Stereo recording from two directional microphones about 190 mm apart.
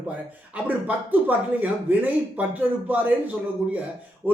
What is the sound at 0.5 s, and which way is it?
A man's voice, 10° right (ahead or behind).